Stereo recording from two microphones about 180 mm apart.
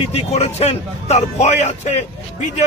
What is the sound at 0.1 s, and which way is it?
A man's voice, 35° left (ahead or behind).